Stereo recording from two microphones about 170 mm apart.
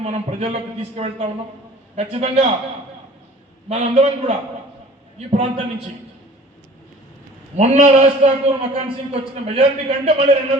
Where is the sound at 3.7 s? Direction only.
40° right (ahead or behind).